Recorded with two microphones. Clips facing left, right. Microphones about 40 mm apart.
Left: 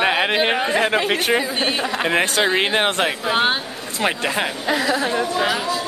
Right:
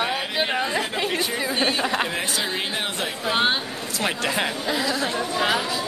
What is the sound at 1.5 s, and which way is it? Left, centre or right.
Speech, left.